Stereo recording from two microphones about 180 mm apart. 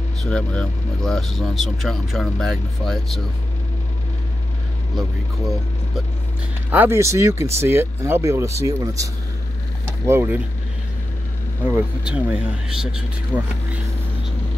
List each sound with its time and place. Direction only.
0.2 s speech: 5° left (ahead or behind)
6.7 s speech: 10° right (ahead or behind)
11.6 s speech: 5° right (ahead or behind)